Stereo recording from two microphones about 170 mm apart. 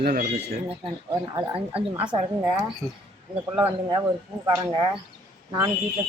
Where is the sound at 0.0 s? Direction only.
60° right (ahead or behind).